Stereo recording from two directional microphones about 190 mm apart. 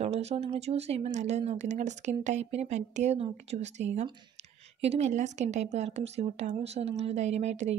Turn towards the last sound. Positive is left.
turn(degrees=-35)  # may be behind; listen again after turning